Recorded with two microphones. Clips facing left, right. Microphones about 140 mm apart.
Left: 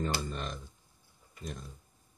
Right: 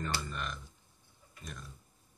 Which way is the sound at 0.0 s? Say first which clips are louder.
Left 3 dB; 30° left (ahead or behind).